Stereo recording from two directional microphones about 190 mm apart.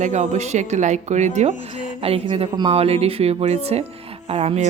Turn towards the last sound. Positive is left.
turn(degrees=-35)  # may be behind; listen again after turning